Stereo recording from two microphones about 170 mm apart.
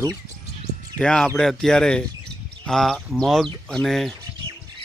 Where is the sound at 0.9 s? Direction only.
5° left (ahead or behind).